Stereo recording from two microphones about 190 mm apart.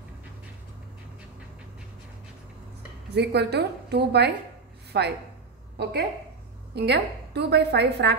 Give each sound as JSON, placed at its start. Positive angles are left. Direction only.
{"t": 3.2, "sound": "a woman's voice", "side_deg": -60}